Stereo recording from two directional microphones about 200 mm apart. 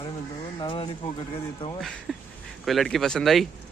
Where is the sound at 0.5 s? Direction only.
25° left (ahead or behind).